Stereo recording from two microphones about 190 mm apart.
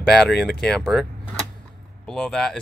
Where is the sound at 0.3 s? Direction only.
60° left (ahead or behind).